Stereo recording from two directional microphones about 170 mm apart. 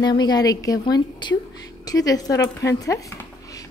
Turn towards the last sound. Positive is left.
turn(degrees=20)  # may be behind; listen again after turning